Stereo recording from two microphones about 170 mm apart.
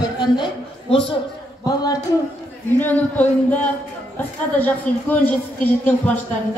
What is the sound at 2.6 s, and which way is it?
A woman's voice, 10° left (ahead or behind).